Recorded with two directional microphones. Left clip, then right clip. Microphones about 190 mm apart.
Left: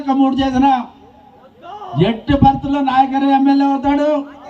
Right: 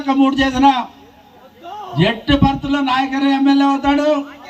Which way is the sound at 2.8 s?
50° left (ahead or behind).